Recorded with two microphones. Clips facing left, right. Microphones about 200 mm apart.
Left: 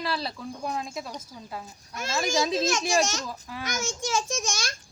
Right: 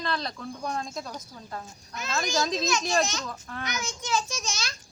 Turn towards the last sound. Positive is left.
turn(degrees=50)  # may be behind; listen again after turning